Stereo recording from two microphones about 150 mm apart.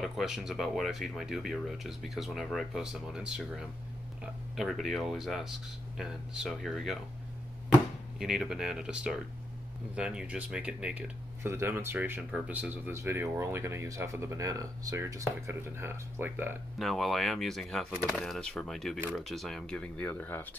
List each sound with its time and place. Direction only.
0.0 s speech: centre (ahead or behind)
8.2 s speech: 5° right (ahead or behind)
16.7 s speech: centre (ahead or behind)